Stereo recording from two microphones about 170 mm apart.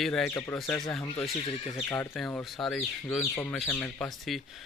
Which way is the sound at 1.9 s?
5° left (ahead or behind).